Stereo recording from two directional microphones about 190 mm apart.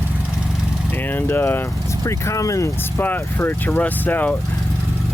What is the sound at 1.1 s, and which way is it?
Speech, 10° left (ahead or behind).